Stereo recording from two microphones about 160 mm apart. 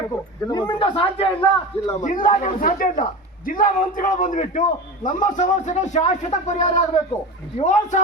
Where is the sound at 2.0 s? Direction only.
55° left (ahead or behind).